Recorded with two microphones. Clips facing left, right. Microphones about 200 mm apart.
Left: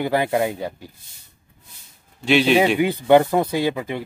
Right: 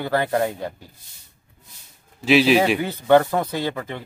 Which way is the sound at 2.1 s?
Centre (ahead or behind).